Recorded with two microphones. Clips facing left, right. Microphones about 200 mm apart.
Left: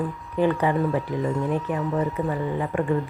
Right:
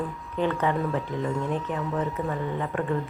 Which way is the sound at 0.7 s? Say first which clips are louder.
Left 4 dB; centre (ahead or behind).